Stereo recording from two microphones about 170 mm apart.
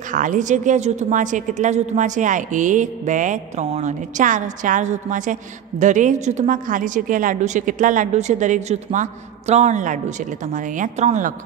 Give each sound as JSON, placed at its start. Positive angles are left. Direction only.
{"t": 0.1, "sound": "a woman's voice", "side_deg": -50}